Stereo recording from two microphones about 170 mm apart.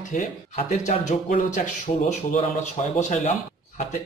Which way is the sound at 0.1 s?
45° left (ahead or behind).